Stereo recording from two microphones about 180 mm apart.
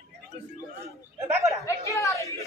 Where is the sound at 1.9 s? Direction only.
15° left (ahead or behind).